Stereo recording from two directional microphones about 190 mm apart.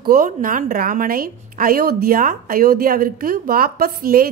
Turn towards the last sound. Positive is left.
turn(degrees=-50)  # may be behind; listen again after turning